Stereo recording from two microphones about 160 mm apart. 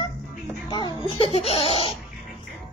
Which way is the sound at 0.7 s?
30° left (ahead or behind).